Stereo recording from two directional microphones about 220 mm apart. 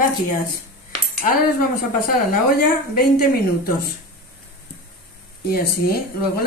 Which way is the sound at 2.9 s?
45° left (ahead or behind).